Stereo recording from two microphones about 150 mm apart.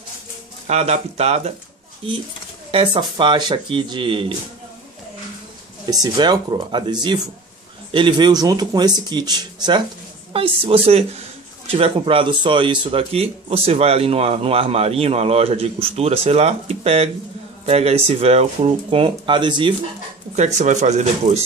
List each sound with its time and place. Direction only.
0.7 s speech: 45° right (ahead or behind)
2.7 s speech: 35° right (ahead or behind)
5.9 s speech: 25° right (ahead or behind)
10.3 s speech: 40° right (ahead or behind)
20.3 s speech: 50° right (ahead or behind)